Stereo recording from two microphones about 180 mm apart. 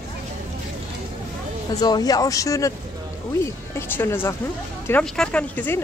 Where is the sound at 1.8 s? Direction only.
20° left (ahead or behind).